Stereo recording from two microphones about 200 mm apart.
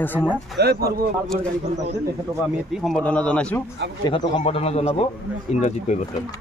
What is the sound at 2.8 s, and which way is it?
Speech, 5° left (ahead or behind).